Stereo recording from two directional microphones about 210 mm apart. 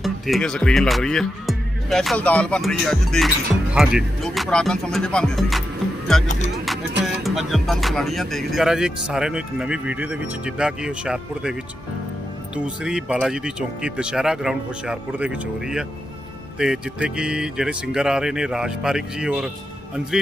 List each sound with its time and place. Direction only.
0.0 s speech: centre (ahead or behind)
6.5 s music: centre (ahead or behind)
7.2 s speech: centre (ahead or behind)
12.5 s speech: 5° right (ahead or behind)